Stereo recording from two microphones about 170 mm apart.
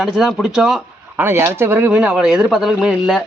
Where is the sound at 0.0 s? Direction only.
Centre (ahead or behind).